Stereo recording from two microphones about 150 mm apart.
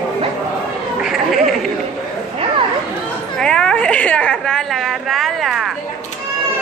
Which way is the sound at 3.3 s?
5° left (ahead or behind).